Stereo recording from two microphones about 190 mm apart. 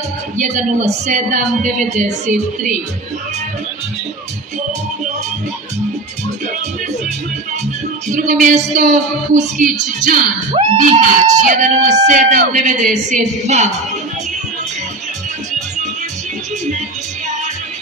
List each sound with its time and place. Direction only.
0.4 s speech: 40° right (ahead or behind)
8.1 s speech: 40° right (ahead or behind)